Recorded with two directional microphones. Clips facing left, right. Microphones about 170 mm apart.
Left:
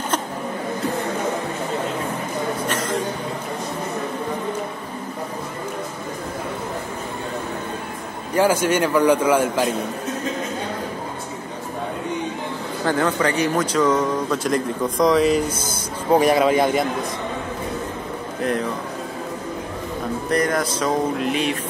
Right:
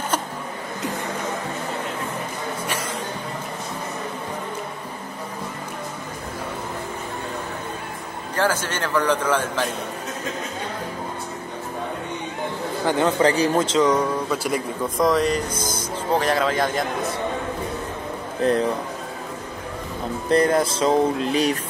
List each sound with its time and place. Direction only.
8.4 s a man's voice: 10° left (ahead or behind)
12.8 s speech: 20° right (ahead or behind); by 15.4 s centre (ahead or behind)
16.1 s a man's voice: 10° left (ahead or behind)
20.2 s speech: 30° right (ahead or behind)